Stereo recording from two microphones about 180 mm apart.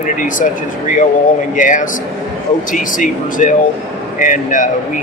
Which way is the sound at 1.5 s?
45° left (ahead or behind).